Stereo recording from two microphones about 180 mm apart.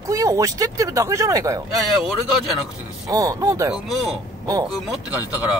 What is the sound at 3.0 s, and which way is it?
Speech, 20° right (ahead or behind).